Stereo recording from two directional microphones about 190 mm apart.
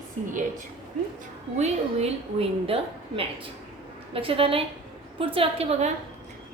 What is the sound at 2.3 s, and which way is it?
A woman's voice, 30° right (ahead or behind).